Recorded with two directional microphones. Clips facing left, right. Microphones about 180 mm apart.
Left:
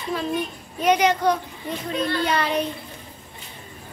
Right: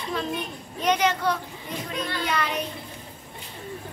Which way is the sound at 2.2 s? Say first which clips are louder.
Left 2 dB; 35° left (ahead or behind).